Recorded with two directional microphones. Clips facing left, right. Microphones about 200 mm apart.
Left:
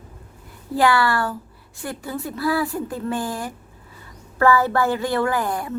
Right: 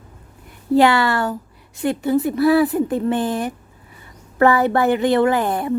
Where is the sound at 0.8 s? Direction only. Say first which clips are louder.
Right 3 dB; 20° right (ahead or behind).